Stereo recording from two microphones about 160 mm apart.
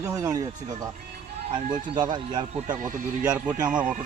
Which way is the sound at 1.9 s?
25° right (ahead or behind).